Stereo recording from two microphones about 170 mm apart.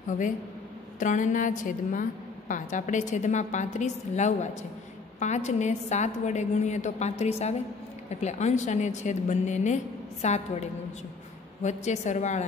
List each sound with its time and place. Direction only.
0.9 s a woman's voice: 50° left (ahead or behind)